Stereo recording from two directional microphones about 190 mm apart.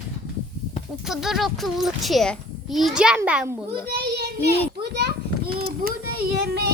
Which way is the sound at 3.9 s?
55° right (ahead or behind).